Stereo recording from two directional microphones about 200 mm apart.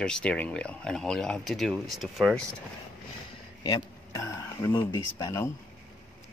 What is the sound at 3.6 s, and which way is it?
Speech, 15° left (ahead or behind).